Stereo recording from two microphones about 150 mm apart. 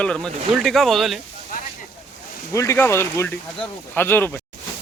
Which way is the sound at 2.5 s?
20° left (ahead or behind).